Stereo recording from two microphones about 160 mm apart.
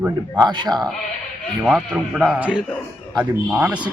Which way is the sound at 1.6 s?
Centre (ahead or behind).